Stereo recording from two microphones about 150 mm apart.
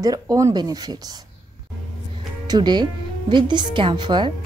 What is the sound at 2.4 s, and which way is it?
A woman's voice, 30° right (ahead or behind).